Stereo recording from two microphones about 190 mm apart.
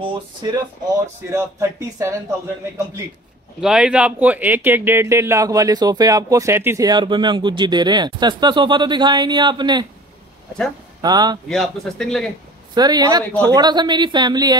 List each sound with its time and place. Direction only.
0.0 s speech: 25° right (ahead or behind)
1.3 s speech: 15° right (ahead or behind)
3.6 s speech: 5° right (ahead or behind); by 9.8 s 25° right (ahead or behind)
11.0 s speech: 20° right (ahead or behind)
11.4 s speech: centre (ahead or behind)
12.7 s speech: 20° right (ahead or behind)